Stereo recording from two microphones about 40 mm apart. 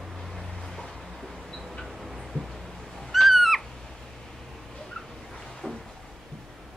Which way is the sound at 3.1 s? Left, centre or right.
Centre.